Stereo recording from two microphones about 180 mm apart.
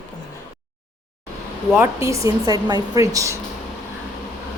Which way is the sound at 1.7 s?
15° right (ahead or behind).